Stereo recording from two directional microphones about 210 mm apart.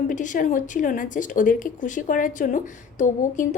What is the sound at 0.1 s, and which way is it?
A woman's voice, 40° left (ahead or behind).